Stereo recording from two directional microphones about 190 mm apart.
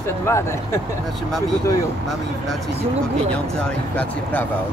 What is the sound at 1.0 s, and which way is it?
Speech, centre (ahead or behind).